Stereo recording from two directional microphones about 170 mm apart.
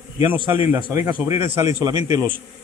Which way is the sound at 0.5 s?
15° right (ahead or behind).